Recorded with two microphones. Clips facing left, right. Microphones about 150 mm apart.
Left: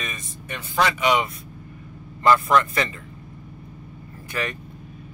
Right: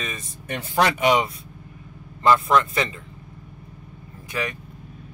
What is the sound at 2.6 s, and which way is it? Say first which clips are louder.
Speech: even; 25° right (ahead or behind).